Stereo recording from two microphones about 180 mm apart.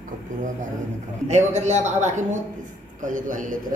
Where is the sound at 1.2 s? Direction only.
40° right (ahead or behind).